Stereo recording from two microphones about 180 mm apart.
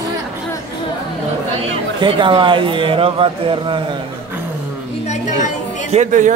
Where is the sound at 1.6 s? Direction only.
30° right (ahead or behind).